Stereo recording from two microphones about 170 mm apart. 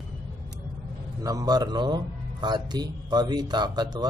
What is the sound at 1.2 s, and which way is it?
Speech, 20° right (ahead or behind).